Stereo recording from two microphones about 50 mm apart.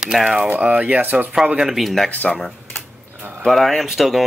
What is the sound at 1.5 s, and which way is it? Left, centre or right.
Speech, centre.